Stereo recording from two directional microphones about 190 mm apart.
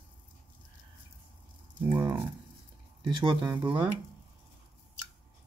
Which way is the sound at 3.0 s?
25° right (ahead or behind).